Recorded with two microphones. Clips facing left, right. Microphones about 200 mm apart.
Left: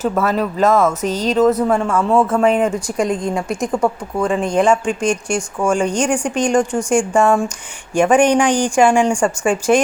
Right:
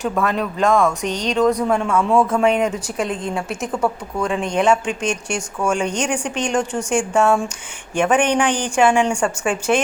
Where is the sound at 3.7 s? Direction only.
10° left (ahead or behind).